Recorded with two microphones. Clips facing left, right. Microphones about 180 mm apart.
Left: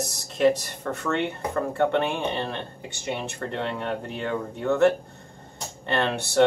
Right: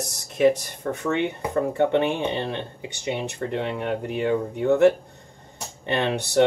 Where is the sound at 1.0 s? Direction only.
15° right (ahead or behind).